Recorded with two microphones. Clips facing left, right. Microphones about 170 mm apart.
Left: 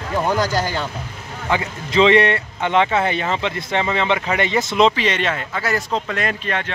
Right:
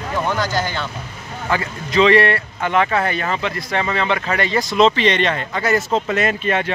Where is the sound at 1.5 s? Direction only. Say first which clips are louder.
Even; 20° left (ahead or behind).